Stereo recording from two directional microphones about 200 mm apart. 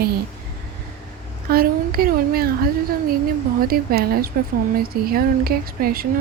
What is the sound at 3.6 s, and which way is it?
Speech, 50° right (ahead or behind).